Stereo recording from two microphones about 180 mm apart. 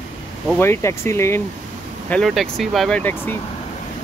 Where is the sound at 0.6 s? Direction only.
15° left (ahead or behind).